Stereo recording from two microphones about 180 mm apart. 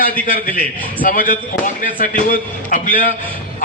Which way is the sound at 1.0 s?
50° left (ahead or behind).